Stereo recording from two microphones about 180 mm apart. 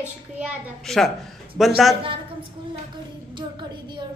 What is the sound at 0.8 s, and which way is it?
Speech, centre (ahead or behind).